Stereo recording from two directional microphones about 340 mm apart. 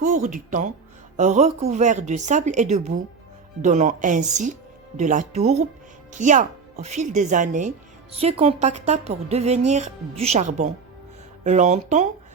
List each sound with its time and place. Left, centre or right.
0.0 s a woman's voice: right